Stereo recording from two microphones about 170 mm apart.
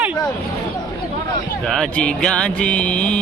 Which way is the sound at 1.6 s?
5° left (ahead or behind).